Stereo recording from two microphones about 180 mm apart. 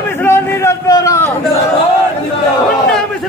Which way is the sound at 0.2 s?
10° left (ahead or behind).